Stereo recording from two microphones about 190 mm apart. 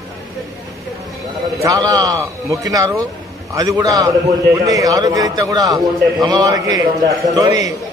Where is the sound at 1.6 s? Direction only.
20° right (ahead or behind).